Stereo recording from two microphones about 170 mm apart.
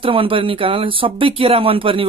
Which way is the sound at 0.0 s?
30° right (ahead or behind).